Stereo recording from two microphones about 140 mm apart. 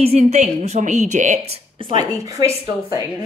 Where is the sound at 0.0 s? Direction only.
50° right (ahead or behind).